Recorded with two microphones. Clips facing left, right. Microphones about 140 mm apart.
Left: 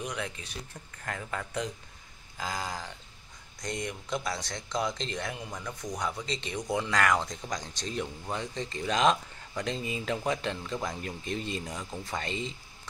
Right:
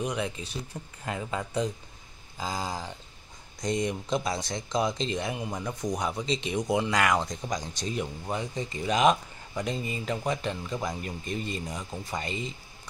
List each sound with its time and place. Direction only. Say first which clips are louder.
0.0 s speech: right 5 dB; 30° right (ahead or behind)
0.9 s speech: right 4 dB; 15° right (ahead or behind)
2.3 s speech: right 2 dB; 30° right (ahead or behind)
3.6 s speech: right 7 dB; 20° right (ahead or behind); by 12.5 s 5° right (ahead or behind)